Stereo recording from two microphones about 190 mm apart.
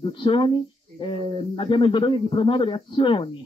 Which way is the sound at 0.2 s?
25° left (ahead or behind).